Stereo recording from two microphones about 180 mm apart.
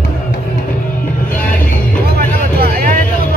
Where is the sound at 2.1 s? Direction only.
60° right (ahead or behind).